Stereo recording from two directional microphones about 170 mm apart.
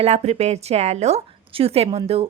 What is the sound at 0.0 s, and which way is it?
Speech, 40° right (ahead or behind).